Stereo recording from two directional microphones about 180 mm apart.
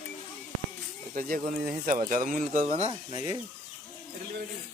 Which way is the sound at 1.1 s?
50° right (ahead or behind).